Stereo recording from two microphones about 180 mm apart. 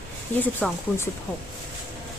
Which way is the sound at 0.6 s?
5° left (ahead or behind).